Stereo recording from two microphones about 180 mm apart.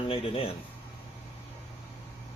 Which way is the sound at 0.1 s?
30° left (ahead or behind).